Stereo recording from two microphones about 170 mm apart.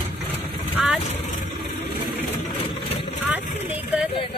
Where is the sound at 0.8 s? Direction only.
5° right (ahead or behind).